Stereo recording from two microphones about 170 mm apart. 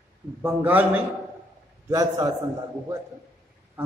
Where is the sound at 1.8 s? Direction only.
20° right (ahead or behind).